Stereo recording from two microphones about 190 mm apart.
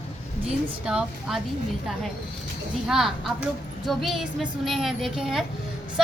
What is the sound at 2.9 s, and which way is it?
Speech, centre (ahead or behind).